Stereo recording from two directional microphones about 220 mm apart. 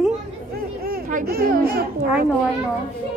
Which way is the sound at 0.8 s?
40° right (ahead or behind).